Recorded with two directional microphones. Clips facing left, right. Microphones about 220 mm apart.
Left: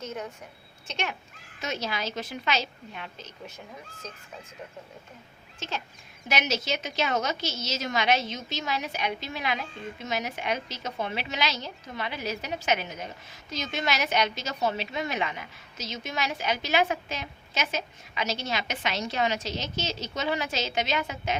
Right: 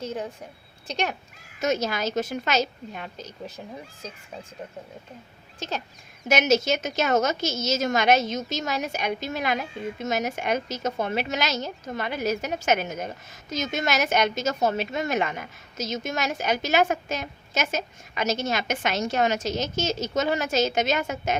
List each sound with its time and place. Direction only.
0.0 s a woman's voice: 30° right (ahead or behind)
5.5 s a woman's voice: 40° right (ahead or behind)